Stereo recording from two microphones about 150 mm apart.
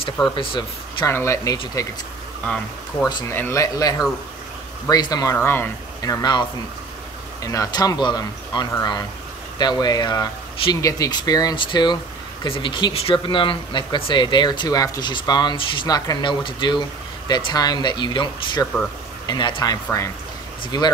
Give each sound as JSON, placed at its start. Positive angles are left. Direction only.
{"t": 0.4, "sound": "speech", "side_deg": 35}
{"t": 1.0, "sound": "speech", "side_deg": 20}
{"t": 2.4, "sound": "speech", "side_deg": 5}
{"t": 3.1, "sound": "speech", "side_deg": 30}
{"t": 3.3, "sound": "speech", "side_deg": 20}
{"t": 7.4, "sound": "speech", "side_deg": 25}